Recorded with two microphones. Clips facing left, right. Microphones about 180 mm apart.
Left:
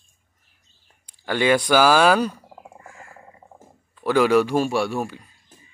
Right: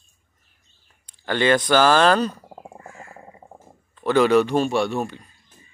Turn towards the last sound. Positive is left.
turn(degrees=5)  # may be behind; listen again after turning